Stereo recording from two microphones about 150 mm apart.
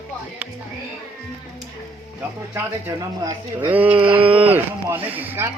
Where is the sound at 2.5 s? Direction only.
15° right (ahead or behind).